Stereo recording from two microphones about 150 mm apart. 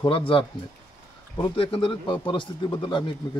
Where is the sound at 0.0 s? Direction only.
35° left (ahead or behind).